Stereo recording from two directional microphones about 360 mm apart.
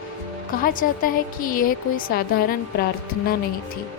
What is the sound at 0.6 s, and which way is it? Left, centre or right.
A woman's voice, left.